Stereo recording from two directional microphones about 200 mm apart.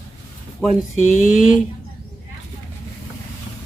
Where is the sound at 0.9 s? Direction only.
40° left (ahead or behind).